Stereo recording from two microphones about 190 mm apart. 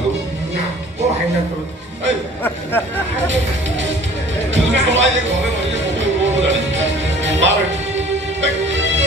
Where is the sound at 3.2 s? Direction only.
75° right (ahead or behind).